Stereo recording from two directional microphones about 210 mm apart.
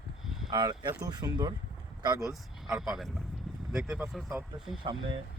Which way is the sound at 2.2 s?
Centre (ahead or behind).